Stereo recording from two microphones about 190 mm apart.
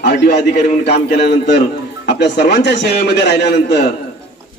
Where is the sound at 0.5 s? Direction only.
40° left (ahead or behind).